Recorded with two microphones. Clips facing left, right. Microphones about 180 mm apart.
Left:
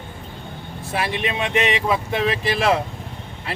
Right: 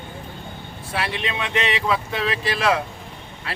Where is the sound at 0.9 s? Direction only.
20° left (ahead or behind).